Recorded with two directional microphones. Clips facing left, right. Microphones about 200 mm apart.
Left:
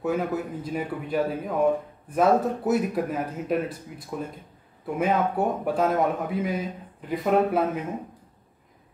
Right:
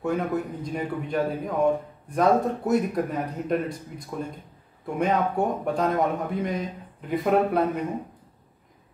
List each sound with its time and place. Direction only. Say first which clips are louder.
0.0 s a man's voice: even; 5° left (ahead or behind)